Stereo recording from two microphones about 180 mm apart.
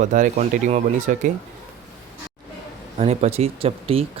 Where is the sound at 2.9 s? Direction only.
35° right (ahead or behind).